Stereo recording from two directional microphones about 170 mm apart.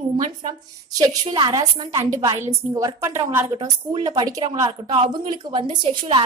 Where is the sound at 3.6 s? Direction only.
25° right (ahead or behind).